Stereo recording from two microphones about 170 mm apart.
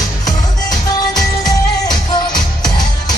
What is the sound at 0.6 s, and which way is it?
Music, 25° left (ahead or behind).